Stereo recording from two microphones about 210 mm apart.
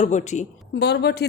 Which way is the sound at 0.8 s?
50° left (ahead or behind).